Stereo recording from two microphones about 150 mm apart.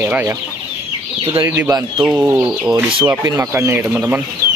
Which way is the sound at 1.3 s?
15° right (ahead or behind).